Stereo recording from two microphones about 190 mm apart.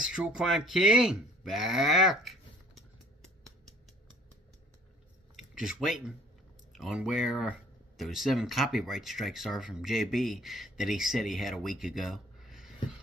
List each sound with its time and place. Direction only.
0.0 s speech: 5° right (ahead or behind)
5.3 s speech: centre (ahead or behind)